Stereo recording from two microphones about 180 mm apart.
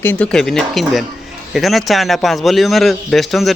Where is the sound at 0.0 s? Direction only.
10° left (ahead or behind).